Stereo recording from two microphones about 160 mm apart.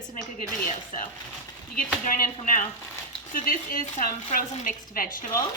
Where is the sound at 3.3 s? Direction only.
60° left (ahead or behind).